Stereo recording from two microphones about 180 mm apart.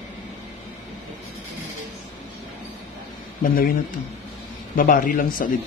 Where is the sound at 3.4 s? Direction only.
55° left (ahead or behind).